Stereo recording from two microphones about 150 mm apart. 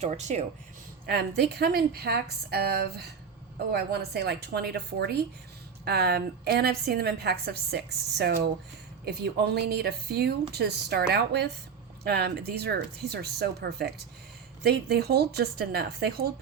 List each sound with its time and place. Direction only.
0.0 s speech: 50° right (ahead or behind)
1.0 s a woman's voice: 90° right